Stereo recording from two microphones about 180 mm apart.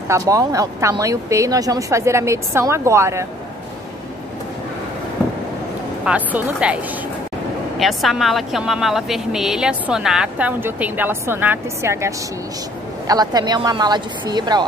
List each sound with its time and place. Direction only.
0.1 s a woman's voice: 20° right (ahead or behind)
6.0 s a woman's voice: 5° right (ahead or behind)
7.8 s a woman's voice: centre (ahead or behind); by 14.6 s 25° right (ahead or behind)